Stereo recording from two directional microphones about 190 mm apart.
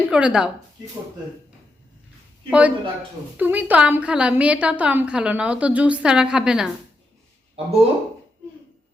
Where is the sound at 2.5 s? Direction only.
5° right (ahead or behind).